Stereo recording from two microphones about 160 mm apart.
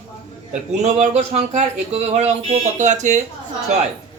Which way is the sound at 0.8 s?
45° right (ahead or behind).